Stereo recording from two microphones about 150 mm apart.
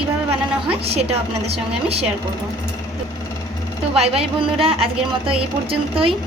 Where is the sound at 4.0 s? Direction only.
40° right (ahead or behind).